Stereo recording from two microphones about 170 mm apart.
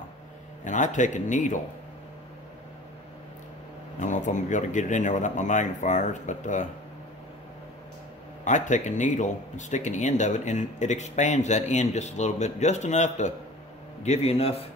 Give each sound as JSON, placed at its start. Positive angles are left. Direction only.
{"t": 0.7, "sound": "speech", "side_deg": 45}
{"t": 4.0, "sound": "speech", "side_deg": 45}
{"t": 8.5, "sound": "a man's voice", "side_deg": 45}